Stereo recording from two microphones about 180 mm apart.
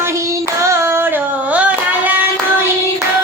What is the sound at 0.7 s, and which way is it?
Singing, 15° right (ahead or behind).